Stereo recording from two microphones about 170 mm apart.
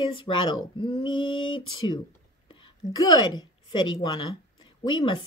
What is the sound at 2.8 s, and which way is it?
Speech, 45° left (ahead or behind).